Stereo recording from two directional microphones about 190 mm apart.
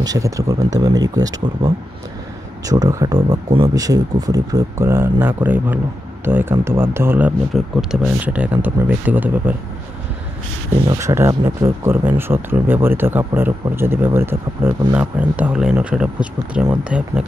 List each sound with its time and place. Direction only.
0.0 s speech: 20° right (ahead or behind)
10.9 s speech: 15° right (ahead or behind)